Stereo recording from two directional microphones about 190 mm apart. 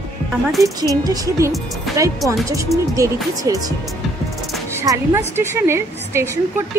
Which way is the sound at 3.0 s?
15° right (ahead or behind).